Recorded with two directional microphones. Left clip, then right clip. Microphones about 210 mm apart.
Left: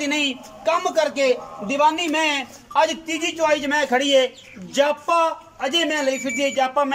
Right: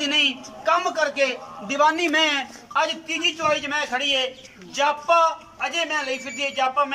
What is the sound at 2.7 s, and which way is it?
A man's voice, 25° left (ahead or behind).